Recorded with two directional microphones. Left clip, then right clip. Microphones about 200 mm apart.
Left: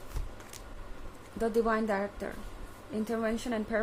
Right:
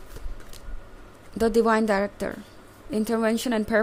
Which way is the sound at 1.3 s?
45° right (ahead or behind).